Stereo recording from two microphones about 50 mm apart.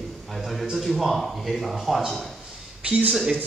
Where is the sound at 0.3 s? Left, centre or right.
Centre.